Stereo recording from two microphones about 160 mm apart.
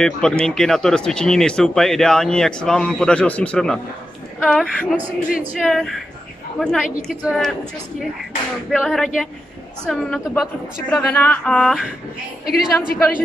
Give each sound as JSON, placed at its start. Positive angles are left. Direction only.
{"t": 0.0, "sound": "speech", "side_deg": 5}
{"t": 8.7, "sound": "speech", "side_deg": 0}
{"t": 11.0, "sound": "speech", "side_deg": 10}
{"t": 12.4, "sound": "a woman's voice", "side_deg": 70}